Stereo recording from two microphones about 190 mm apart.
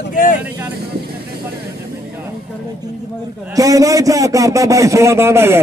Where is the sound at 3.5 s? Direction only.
20° right (ahead or behind).